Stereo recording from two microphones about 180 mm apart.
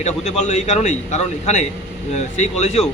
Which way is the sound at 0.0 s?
40° left (ahead or behind).